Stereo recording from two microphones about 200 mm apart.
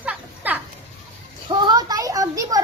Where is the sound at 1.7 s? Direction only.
20° right (ahead or behind).